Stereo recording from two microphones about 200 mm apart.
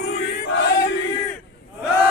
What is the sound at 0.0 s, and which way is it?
Crowd, 65° left (ahead or behind).